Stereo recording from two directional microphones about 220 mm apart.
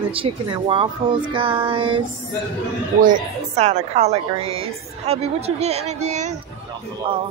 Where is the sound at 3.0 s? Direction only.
35° right (ahead or behind).